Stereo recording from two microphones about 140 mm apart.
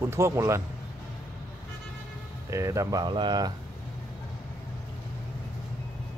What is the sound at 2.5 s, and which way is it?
Speech, 20° right (ahead or behind).